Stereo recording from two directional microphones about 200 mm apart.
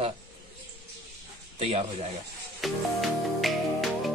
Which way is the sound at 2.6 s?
Centre (ahead or behind).